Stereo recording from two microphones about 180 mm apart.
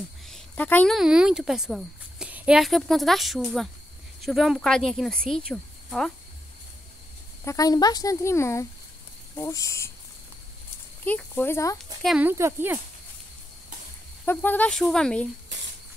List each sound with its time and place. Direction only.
0.3 s a sound: 10° left (ahead or behind)
0.9 s speech: 5° right (ahead or behind)
7.4 s speech: 20° left (ahead or behind)
11.1 s speech: 10° left (ahead or behind)
11.8 s a woman's voice: 5° left (ahead or behind)
12.2 s speech: 15° right (ahead or behind)
14.2 s speech: 10° left (ahead or behind)